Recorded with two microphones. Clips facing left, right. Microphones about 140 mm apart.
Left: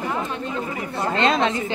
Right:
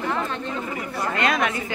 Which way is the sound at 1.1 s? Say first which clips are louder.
Left 3 dB; 25° left (ahead or behind).